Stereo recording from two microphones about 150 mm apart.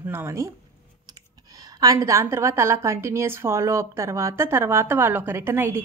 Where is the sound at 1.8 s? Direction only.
20° right (ahead or behind).